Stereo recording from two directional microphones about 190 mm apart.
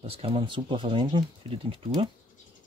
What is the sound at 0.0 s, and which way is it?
Speech, 30° right (ahead or behind).